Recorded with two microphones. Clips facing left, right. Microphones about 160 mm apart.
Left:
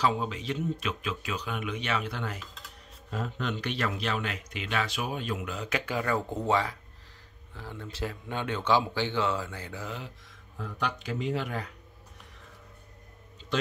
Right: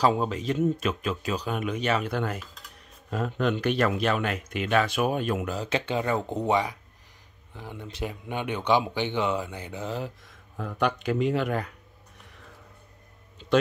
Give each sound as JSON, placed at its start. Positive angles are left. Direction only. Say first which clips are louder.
{"t": 0.0, "sound": "speech", "louder": "right 5 dB", "side_deg": -40}
{"t": 5.5, "sound": "speech", "louder": "right 4 dB", "side_deg": -30}
{"t": 9.8, "sound": "speech", "louder": "right 10 dB", "side_deg": -40}
{"t": 10.6, "sound": "speech", "louder": "right 7 dB", "side_deg": -55}